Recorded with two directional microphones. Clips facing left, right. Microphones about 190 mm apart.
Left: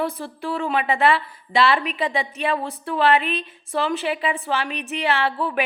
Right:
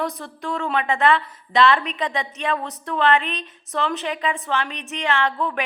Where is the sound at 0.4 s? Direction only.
10° left (ahead or behind).